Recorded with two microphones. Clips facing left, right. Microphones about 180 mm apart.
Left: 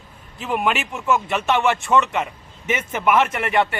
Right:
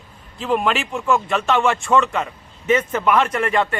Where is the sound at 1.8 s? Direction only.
20° left (ahead or behind).